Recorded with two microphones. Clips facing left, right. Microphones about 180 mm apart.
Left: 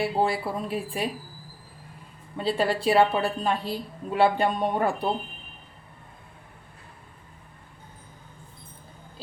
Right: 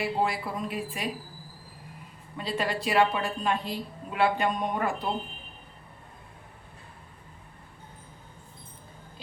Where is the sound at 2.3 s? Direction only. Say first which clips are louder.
Left 5 dB; 30° left (ahead or behind).